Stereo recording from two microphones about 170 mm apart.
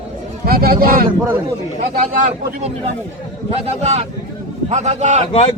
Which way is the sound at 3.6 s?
40° right (ahead or behind).